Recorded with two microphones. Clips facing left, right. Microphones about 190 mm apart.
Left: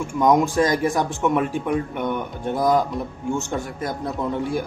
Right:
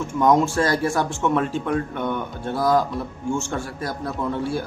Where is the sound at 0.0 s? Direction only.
10° left (ahead or behind).